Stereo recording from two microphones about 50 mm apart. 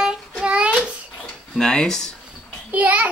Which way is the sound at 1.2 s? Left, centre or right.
Centre.